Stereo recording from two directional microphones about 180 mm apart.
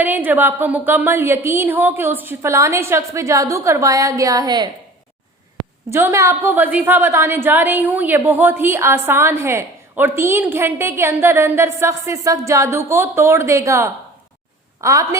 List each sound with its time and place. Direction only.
0.0 s a woman's voice: 10° right (ahead or behind)
5.9 s a woman's voice: 15° right (ahead or behind)